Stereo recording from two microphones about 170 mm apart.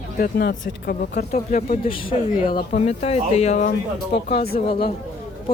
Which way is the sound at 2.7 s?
40° left (ahead or behind).